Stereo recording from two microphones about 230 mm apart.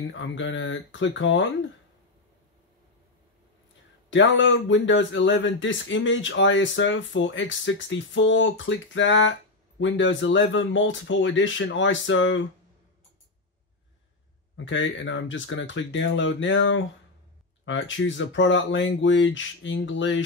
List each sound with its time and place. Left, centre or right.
0.1 s speech: left
4.1 s speech: left
14.6 s speech: left